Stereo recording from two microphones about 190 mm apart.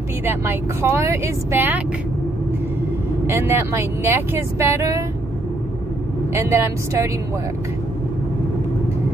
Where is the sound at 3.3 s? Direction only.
10° right (ahead or behind).